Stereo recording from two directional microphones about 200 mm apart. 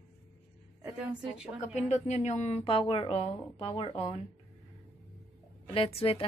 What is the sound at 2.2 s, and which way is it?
A woman's voice, 35° left (ahead or behind).